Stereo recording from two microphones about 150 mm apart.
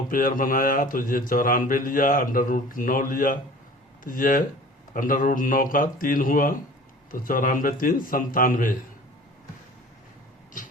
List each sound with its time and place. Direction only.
0.1 s a man's voice: 65° left (ahead or behind)